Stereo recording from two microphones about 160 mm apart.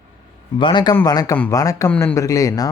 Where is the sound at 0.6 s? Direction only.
30° left (ahead or behind).